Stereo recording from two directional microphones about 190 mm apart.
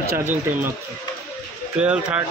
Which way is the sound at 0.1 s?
10° right (ahead or behind).